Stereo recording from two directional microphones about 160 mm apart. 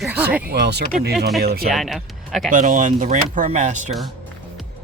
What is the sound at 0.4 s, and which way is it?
Speech, 90° right.